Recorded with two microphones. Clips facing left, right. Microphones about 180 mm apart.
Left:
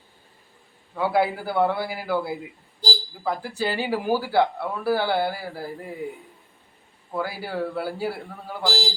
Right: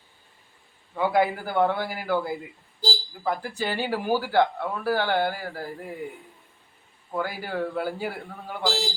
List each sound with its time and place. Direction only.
0.9 s speech: 5° left (ahead or behind)